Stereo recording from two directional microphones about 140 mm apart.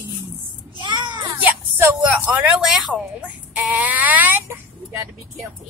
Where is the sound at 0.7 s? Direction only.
35° right (ahead or behind).